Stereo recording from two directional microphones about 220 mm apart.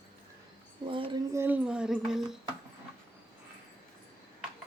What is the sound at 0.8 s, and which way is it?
Speech, 20° right (ahead or behind).